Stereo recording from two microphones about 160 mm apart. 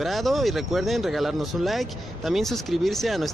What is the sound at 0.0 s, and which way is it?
Speech, centre (ahead or behind).